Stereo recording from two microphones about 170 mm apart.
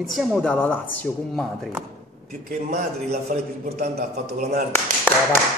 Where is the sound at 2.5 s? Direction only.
45° right (ahead or behind).